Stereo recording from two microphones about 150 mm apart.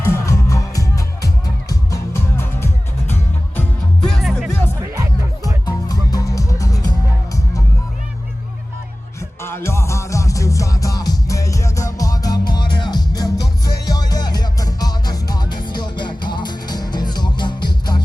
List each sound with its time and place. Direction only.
0.1 s music: 20° left (ahead or behind); by 4.5 s centre (ahead or behind)
4.8 s music: 25° right (ahead or behind)
5.6 s music: 25° left (ahead or behind)
9.4 s music: 15° left (ahead or behind)